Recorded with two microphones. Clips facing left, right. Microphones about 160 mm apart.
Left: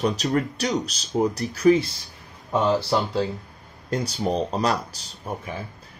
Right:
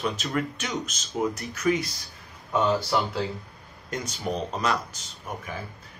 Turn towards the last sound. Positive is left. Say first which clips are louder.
# left 4 dB
turn(degrees=35)  # may be behind; listen again after turning